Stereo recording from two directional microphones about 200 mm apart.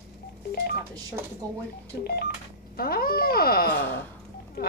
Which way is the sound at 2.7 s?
50° left (ahead or behind).